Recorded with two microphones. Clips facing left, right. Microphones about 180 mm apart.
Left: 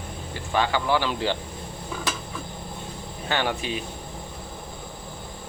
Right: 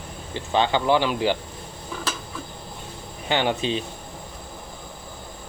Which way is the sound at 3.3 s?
20° right (ahead or behind).